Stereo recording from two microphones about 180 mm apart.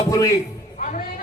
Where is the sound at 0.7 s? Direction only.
45° left (ahead or behind).